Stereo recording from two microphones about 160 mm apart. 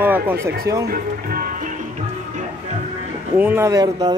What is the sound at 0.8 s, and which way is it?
Music, 65° right (ahead or behind).